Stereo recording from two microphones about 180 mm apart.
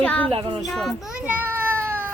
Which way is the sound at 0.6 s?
Centre (ahead or behind).